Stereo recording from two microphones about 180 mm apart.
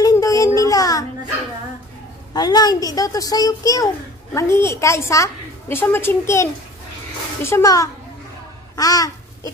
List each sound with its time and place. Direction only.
0.0 s a sound: 20° left (ahead or behind)
0.6 s music: 20° left (ahead or behind)
2.3 s a child's voice: 20° left (ahead or behind)
8.7 s babbling: 20° left (ahead or behind)